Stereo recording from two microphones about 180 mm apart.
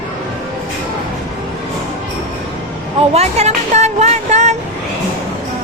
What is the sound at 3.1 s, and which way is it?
Music, 35° right (ahead or behind).